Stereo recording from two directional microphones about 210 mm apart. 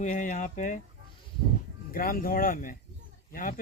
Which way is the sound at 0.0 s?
40° left (ahead or behind).